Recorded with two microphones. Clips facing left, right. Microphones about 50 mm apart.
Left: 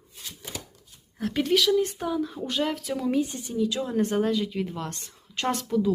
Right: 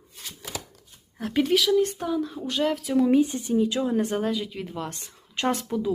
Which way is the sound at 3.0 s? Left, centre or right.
Centre.